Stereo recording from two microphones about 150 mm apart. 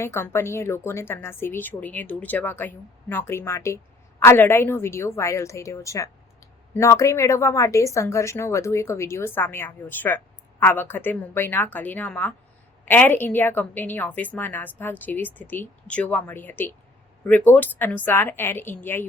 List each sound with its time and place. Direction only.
0.0 s a woman's voice: 15° left (ahead or behind)